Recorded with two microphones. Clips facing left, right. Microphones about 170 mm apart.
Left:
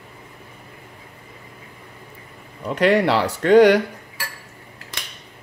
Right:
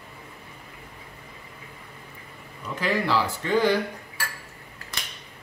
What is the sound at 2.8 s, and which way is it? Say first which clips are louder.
Speech: left 8 dB; 75° left (ahead or behind).